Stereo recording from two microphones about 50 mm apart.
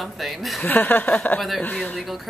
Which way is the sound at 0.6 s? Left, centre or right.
Left.